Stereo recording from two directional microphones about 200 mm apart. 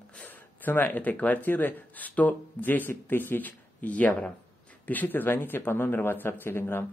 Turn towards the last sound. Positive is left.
turn(degrees=10)  # may be behind; listen again after turning